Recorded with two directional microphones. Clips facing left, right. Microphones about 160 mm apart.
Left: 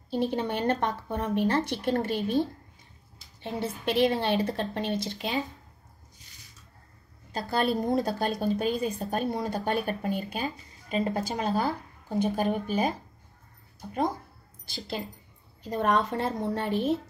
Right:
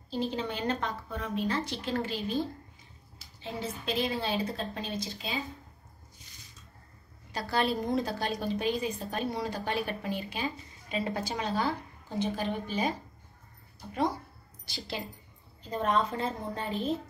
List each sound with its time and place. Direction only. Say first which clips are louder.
0.1 s a woman's voice: left 5 dB; 60° left (ahead or behind)
3.4 s a woman's voice: left 5 dB; 60° left (ahead or behind)
7.3 s speech: left 3 dB; 50° left (ahead or behind)
15.6 s a woman's voice: left 3 dB; 75° left (ahead or behind)